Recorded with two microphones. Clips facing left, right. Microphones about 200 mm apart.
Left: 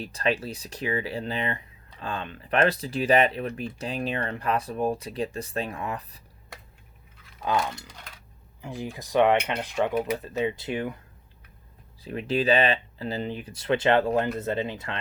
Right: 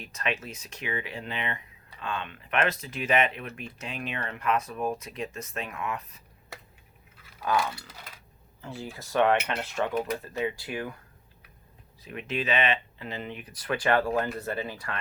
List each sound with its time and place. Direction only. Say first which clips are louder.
0.0 s speech: left 6 dB; 35° left (ahead or behind)
7.7 s coin: left 2 dB; 5° right (ahead or behind)
8.6 s speech: left 4 dB; 15° left (ahead or behind)
12.0 s speech: left 7 dB; 35° left (ahead or behind)